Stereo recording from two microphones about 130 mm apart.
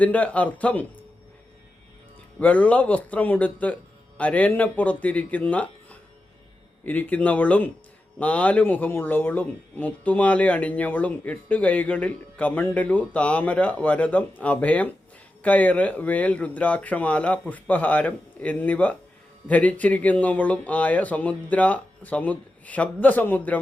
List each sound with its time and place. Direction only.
0.0 s speech: 10° left (ahead or behind)
2.4 s speech: 10° left (ahead or behind)